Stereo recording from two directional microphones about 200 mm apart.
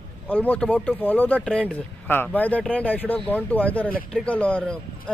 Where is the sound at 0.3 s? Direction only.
5° left (ahead or behind).